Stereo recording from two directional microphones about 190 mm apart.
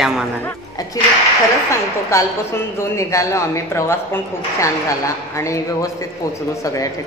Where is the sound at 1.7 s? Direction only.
15° left (ahead or behind).